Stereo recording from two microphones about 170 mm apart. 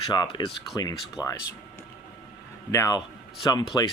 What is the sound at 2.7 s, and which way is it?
Speech, 20° left (ahead or behind).